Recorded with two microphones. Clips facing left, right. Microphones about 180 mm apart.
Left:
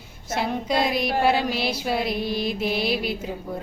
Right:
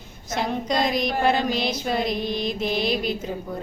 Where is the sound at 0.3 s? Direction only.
5° left (ahead or behind).